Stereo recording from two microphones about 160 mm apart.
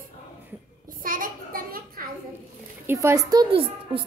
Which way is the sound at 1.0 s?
60° right (ahead or behind).